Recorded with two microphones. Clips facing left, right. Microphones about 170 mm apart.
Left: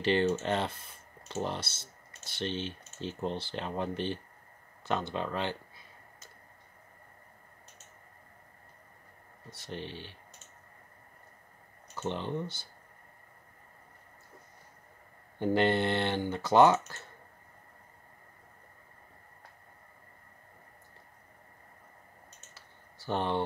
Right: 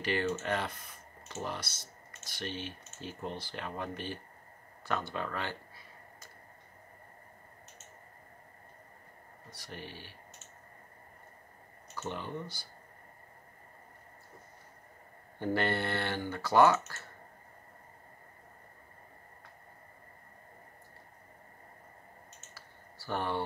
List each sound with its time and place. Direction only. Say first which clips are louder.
0.0 s speech: left 5 dB; 25° left (ahead or behind)
9.5 s speech: left 5 dB; 25° left (ahead or behind)
11.9 s speech: left 4 dB; 25° left (ahead or behind)
15.3 s speech: left 5 dB; 20° left (ahead or behind)
22.5 s computer keyboard: right 2 dB; 20° left (ahead or behind)